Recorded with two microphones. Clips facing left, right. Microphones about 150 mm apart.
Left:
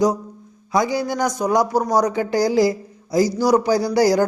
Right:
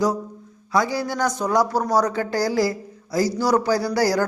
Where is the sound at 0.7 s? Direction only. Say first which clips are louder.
Left 2 dB; 15° left (ahead or behind).